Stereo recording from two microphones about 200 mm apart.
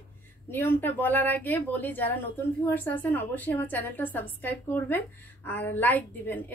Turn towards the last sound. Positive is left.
turn(degrees=10)  # may be behind; listen again after turning